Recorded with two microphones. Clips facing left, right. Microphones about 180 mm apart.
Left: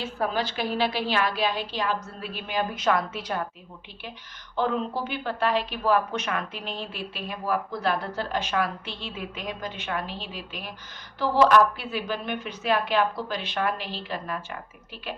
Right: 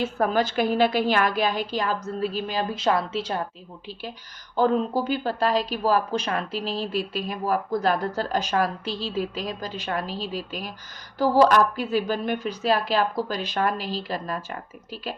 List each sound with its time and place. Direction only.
0.0 s a woman's voice: 50° right (ahead or behind); by 3.4 s 30° right (ahead or behind)
4.5 s speech: 40° right (ahead or behind)